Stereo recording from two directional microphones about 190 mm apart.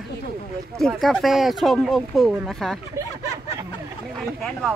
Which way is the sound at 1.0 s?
Centre (ahead or behind).